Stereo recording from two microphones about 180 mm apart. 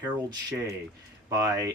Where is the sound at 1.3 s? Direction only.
20° right (ahead or behind).